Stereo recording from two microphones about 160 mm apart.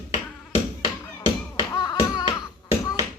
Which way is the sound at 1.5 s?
25° left (ahead or behind).